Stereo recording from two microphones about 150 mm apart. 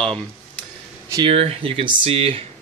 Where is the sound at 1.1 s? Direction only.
40° right (ahead or behind).